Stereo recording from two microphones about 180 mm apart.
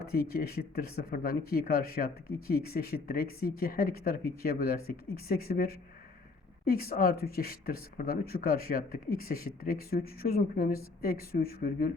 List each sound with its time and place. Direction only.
0.0 s speech: 55° left (ahead or behind)